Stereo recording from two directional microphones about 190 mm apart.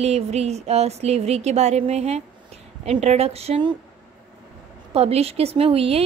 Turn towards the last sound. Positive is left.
turn(degrees=-30)  # may be behind; listen again after turning